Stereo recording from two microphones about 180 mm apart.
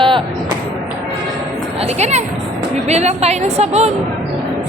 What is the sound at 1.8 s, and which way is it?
A woman's voice, 35° right (ahead or behind).